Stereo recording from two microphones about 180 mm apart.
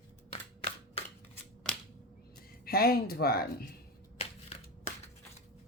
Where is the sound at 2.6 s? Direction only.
55° left (ahead or behind).